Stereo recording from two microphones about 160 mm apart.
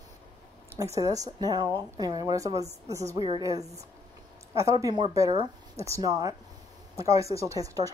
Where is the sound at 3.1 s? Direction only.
30° right (ahead or behind).